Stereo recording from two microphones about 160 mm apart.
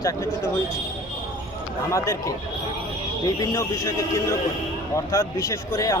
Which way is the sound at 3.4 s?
20° left (ahead or behind).